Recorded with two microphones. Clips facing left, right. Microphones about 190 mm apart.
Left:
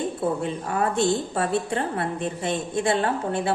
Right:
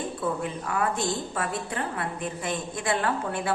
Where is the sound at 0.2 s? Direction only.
30° left (ahead or behind).